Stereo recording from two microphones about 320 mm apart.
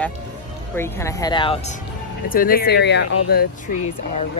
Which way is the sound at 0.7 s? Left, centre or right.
Centre.